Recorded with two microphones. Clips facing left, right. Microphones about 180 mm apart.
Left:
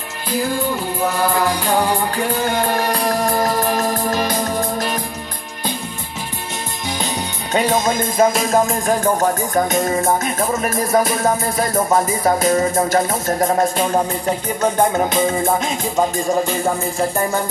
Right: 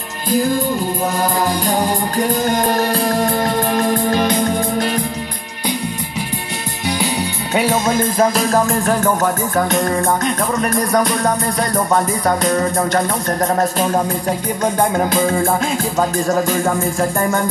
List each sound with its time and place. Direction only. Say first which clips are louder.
0.3 s music: right 4 dB; 45° right (ahead or behind)
3.9 s music: right 4 dB; 55° right (ahead or behind)
7.7 s music: right 1 dB; 10° left (ahead or behind)
8.4 s music: right 1 dB; centre (ahead or behind)
8.8 s music: right 1 dB; 15° left (ahead or behind)
11.2 s music: even; 25° left (ahead or behind)
13.4 s music: even; 5° left (ahead or behind)